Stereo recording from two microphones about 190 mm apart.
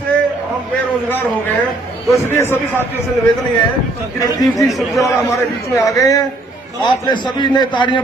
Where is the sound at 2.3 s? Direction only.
15° left (ahead or behind).